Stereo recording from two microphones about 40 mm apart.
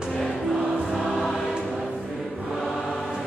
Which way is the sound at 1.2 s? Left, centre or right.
Centre.